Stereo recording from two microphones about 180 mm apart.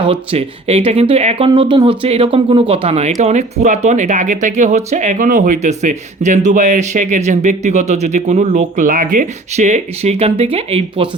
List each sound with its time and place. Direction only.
0.0 s speech: 30° right (ahead or behind)